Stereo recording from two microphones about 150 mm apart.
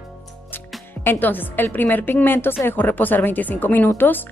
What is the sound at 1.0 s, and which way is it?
A woman's voice, 15° left (ahead or behind).